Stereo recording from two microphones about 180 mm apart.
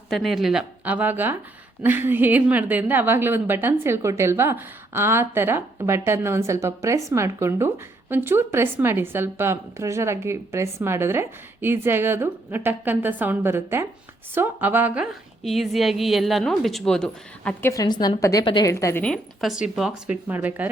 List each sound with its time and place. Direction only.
0.1 s a woman's voice: centre (ahead or behind)
17.7 s a woman's voice: 20° left (ahead or behind)
19.0 s a woman's voice: centre (ahead or behind)